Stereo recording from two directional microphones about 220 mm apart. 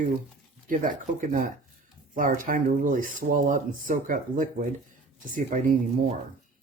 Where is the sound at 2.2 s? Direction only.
35° right (ahead or behind).